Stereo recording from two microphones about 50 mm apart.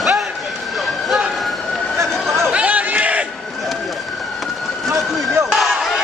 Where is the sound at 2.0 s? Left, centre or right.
Right.